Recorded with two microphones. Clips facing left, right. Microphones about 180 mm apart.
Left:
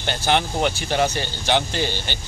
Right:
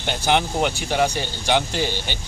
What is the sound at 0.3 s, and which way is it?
A man's voice, 5° right (ahead or behind).